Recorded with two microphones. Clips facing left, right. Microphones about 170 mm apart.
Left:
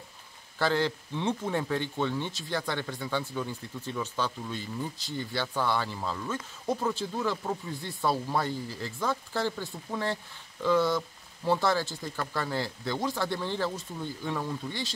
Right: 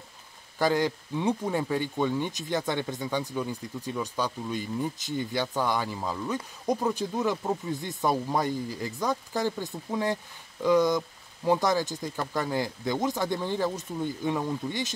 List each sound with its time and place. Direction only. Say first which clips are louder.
0.6 s speech: right 2 dB; 15° right (ahead or behind)